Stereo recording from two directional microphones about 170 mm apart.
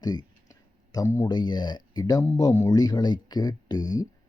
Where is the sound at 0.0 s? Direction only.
25° left (ahead or behind).